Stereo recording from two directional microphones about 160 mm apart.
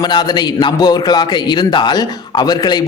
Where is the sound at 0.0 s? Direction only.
25° left (ahead or behind).